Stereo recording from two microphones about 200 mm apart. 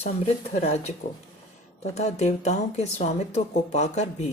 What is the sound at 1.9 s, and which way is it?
Speech, 35° left (ahead or behind).